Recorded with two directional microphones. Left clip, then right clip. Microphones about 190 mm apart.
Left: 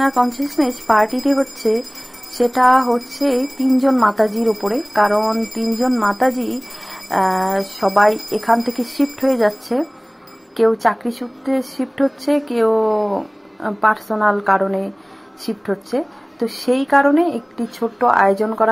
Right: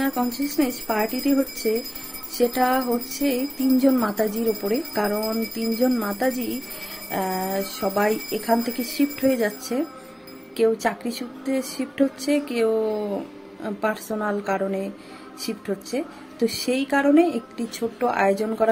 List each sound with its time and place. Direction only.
0.0 s wind chime: centre (ahead or behind)